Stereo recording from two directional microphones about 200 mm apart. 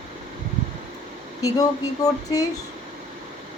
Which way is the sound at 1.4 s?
20° left (ahead or behind).